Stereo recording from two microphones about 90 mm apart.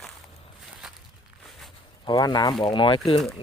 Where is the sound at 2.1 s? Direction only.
55° left (ahead or behind).